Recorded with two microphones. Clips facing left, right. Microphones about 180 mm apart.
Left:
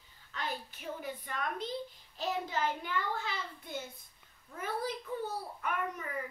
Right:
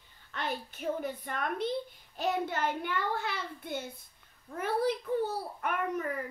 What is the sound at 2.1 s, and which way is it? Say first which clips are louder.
A woman's voice: right 4 dB; 65° right (ahead or behind).